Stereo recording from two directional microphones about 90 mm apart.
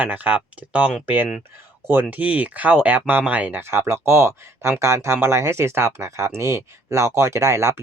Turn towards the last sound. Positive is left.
turn(degrees=-30)  # may be behind; listen again after turning